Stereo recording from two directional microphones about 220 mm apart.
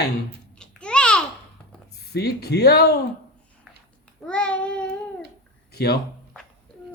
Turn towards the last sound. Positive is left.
turn(degrees=45)  # may be behind; listen again after turning